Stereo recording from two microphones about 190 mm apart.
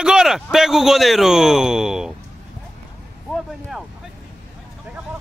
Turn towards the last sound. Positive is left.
turn(degrees=0)  # may be behind; listen again after turning